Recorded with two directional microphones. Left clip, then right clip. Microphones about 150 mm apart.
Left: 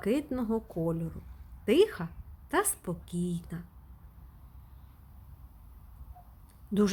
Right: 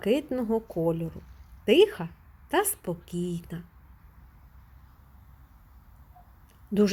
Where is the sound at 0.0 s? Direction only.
10° right (ahead or behind).